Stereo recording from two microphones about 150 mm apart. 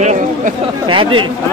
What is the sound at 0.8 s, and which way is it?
Speech, 35° right (ahead or behind).